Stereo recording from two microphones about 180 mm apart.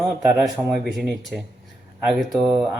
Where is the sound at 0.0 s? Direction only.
5° right (ahead or behind).